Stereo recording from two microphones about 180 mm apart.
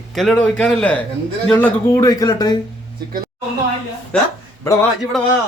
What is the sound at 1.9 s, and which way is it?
Speech, 20° left (ahead or behind).